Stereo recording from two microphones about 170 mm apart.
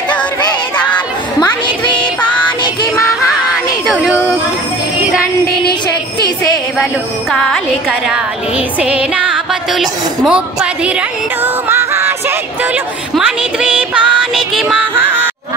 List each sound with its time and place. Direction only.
0.7 s music: 10° left (ahead or behind)
2.6 s music: 20° left (ahead or behind)
3.8 s music: 5° left (ahead or behind)
5.7 s a sound: 25° left (ahead or behind)
7.2 s speech: 5° left (ahead or behind)
8.1 s music: 5° right (ahead or behind)
13.1 s child singing: 5° right (ahead or behind)